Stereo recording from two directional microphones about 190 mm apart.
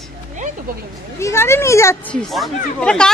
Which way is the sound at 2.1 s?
Centre (ahead or behind).